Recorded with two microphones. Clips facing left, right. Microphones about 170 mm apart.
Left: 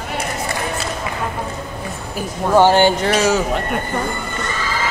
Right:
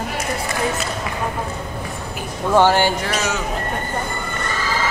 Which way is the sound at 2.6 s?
20° left (ahead or behind).